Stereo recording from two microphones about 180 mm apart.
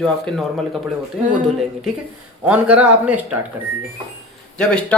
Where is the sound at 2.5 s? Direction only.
5° right (ahead or behind).